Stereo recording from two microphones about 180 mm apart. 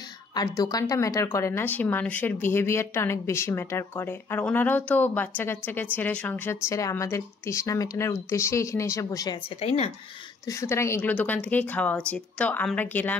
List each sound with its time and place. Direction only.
0.3 s speech: 20° left (ahead or behind)
9.6 s speech: 35° left (ahead or behind)
10.4 s speech: 15° left (ahead or behind)